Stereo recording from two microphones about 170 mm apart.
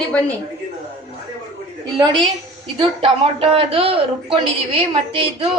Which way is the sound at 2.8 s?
30° right (ahead or behind).